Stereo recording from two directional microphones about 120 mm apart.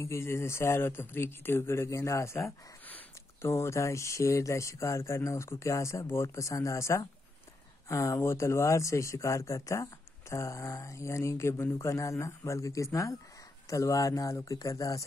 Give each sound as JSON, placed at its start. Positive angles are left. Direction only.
{"t": 0.0, "sound": "speech", "side_deg": 20}